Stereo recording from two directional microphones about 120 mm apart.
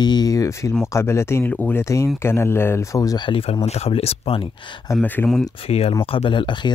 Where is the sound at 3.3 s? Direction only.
50° left (ahead or behind).